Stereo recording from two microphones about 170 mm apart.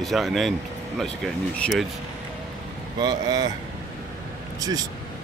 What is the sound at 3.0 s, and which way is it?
Speech, 25° right (ahead or behind).